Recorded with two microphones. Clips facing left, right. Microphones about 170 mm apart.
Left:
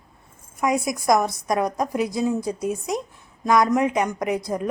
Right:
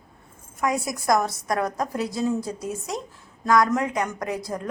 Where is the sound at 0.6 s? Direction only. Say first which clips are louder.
Left 3 dB; 15° left (ahead or behind).